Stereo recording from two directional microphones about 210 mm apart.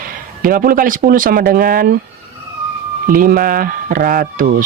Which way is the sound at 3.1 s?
45° right (ahead or behind).